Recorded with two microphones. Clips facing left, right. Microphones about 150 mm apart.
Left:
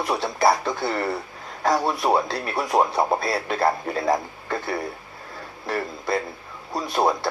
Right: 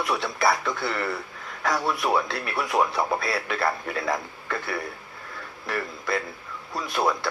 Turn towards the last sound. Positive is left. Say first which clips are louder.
# left 3 dB
turn(degrees=25)  # may be behind; listen again after turning